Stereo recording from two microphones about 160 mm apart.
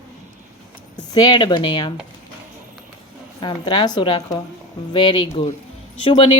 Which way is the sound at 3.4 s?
30° left (ahead or behind).